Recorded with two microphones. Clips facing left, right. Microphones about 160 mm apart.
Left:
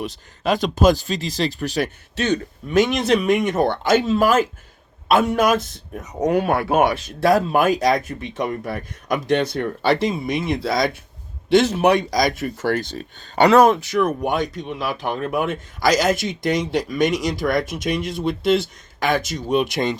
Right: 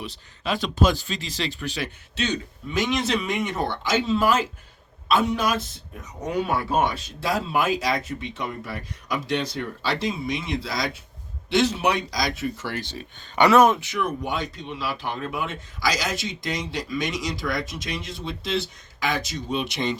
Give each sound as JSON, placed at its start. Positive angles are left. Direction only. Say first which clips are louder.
{"t": 0.0, "sound": "speech", "louder": "left 7 dB", "side_deg": 45}